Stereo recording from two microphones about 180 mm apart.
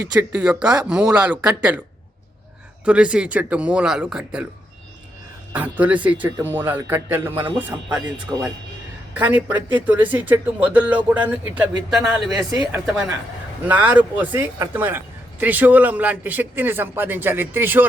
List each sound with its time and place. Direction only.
0.0 s speech: 10° right (ahead or behind)
2.8 s speech: 5° right (ahead or behind)
5.5 s speech: 10° right (ahead or behind)
7.4 s speech: 25° right (ahead or behind)
8.3 s speech: 10° right (ahead or behind)
12.5 s speech: 20° right (ahead or behind)
13.7 s speech: 10° right (ahead or behind)